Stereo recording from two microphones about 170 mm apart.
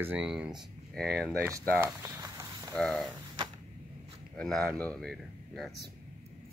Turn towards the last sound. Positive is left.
turn(degrees=0)  # may be behind; listen again after turning